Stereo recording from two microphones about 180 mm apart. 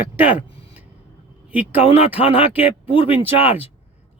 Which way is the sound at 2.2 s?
30° left (ahead or behind).